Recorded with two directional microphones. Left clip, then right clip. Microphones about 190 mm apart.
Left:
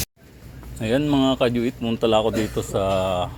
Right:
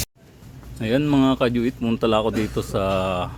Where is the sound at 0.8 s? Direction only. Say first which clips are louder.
Right 1 dB; 20° right (ahead or behind).